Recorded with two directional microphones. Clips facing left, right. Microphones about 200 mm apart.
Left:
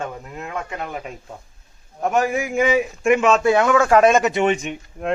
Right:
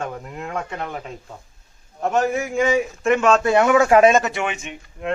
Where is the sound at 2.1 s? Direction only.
15° left (ahead or behind); by 3.7 s centre (ahead or behind).